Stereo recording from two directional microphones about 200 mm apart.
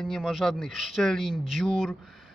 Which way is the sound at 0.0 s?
Centre (ahead or behind).